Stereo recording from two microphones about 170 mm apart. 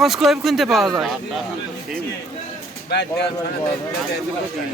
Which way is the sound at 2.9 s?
85° left.